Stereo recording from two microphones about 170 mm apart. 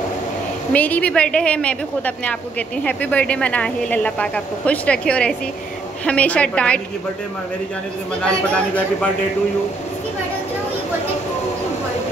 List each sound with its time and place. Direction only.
0.7 s speech: 10° left (ahead or behind)
8.2 s speech: 10° left (ahead or behind)